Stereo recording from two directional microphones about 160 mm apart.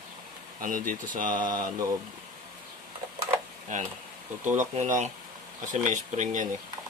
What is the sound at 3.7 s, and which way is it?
Speech, 50° right (ahead or behind).